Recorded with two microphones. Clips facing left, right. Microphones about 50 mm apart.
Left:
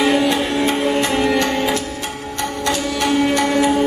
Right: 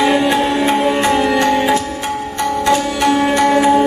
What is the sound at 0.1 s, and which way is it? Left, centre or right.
Music, centre.